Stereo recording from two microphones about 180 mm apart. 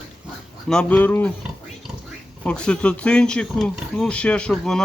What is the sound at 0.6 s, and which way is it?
Speech, 5° left (ahead or behind).